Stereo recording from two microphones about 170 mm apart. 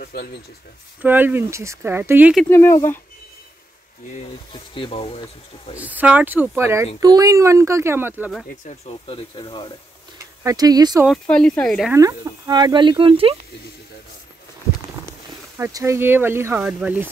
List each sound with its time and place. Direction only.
0.0 s speech: 65° left (ahead or behind)
1.0 s speech: 10° right (ahead or behind)
2.5 s speech: 15° left (ahead or behind)
4.5 s speech: 30° left (ahead or behind)
5.8 s speech: 10° right (ahead or behind)
8.6 s speech: 35° left (ahead or behind)
10.4 s speech: 20° right (ahead or behind)
11.1 s speech: 5° left (ahead or behind)
11.9 s speech: 20° right (ahead or behind)
15.5 s speech: 15° right (ahead or behind)